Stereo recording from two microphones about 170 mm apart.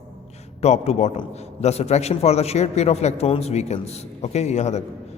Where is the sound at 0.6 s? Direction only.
40° left (ahead or behind).